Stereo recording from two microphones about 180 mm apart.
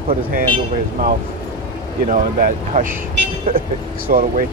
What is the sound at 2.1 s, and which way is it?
Speech, 45° right (ahead or behind).